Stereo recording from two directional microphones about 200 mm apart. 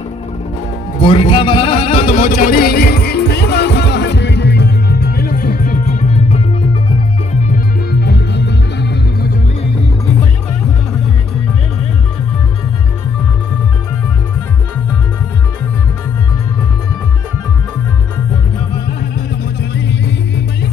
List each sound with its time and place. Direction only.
1.0 s music: 25° left (ahead or behind)
7.5 s music: 55° left (ahead or behind)
19.7 s music: 60° left (ahead or behind)